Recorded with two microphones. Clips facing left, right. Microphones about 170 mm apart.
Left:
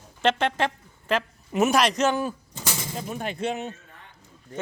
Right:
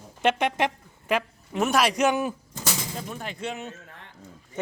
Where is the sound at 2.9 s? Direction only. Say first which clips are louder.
Left 3 dB; 5° left (ahead or behind).